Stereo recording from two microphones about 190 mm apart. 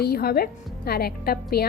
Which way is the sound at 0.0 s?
55° left (ahead or behind).